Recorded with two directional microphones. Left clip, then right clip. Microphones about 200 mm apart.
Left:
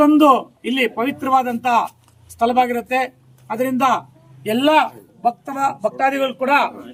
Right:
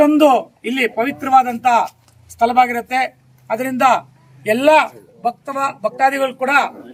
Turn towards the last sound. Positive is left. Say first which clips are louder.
# right 1 dB
turn(degrees=-15)  # may be behind; listen again after turning